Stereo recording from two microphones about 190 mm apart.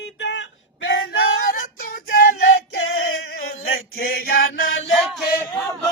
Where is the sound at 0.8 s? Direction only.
70° left (ahead or behind); by 2.8 s 55° left (ahead or behind).